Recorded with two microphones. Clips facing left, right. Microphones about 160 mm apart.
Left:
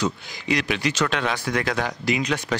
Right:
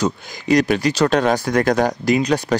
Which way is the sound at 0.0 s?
45° right (ahead or behind).